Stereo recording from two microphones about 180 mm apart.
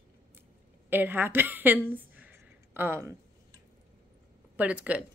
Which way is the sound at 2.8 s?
15° right (ahead or behind).